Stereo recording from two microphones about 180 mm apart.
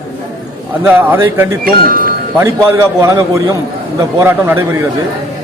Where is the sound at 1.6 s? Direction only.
50° right (ahead or behind).